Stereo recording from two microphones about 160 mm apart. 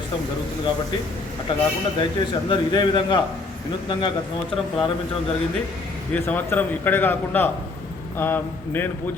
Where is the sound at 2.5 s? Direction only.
30° left (ahead or behind).